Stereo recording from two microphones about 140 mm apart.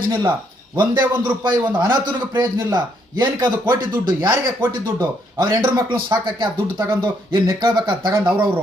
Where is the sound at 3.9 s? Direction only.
30° right (ahead or behind).